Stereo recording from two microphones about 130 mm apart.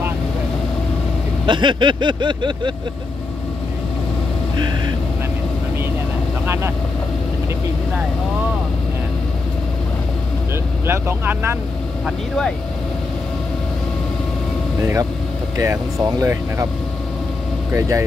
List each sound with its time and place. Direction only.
1.4 s speech: 35° right (ahead or behind)
6.4 s vehicle: 20° right (ahead or behind)
10.9 s speech: 20° right (ahead or behind)
15.5 s speech: 25° right (ahead or behind)
17.7 s speech: 25° right (ahead or behind)